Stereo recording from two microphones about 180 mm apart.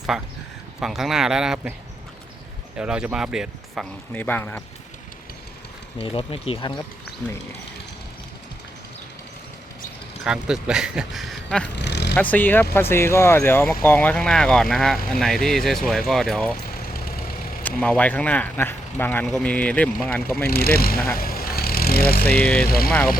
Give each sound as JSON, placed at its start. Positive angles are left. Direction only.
{"t": 0.1, "sound": "speech", "side_deg": 0}
{"t": 2.7, "sound": "speech", "side_deg": -5}
{"t": 4.1, "sound": "speech", "side_deg": 10}
{"t": 6.0, "sound": "speech", "side_deg": 30}
{"t": 10.2, "sound": "speech", "side_deg": -5}
{"t": 11.8, "sound": "vehicle", "side_deg": 70}
{"t": 12.1, "sound": "speech", "side_deg": 10}
{"t": 16.7, "sound": "vehicle", "side_deg": 55}
{"t": 17.6, "sound": "speech", "side_deg": 10}
{"t": 20.5, "sound": "speech", "side_deg": 55}
{"t": 21.2, "sound": "vehicle", "side_deg": 55}
{"t": 22.4, "sound": "speech", "side_deg": 5}
{"t": 22.6, "sound": "speech", "side_deg": 55}